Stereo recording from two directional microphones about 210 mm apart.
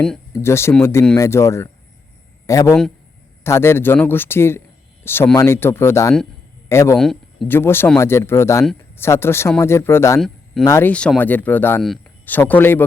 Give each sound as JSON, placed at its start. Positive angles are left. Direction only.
{"t": 0.0, "sound": "speech", "side_deg": 10}
{"t": 6.9, "sound": "speech", "side_deg": 0}
{"t": 10.2, "sound": "a sound", "side_deg": 0}
{"t": 10.6, "sound": "speech", "side_deg": 15}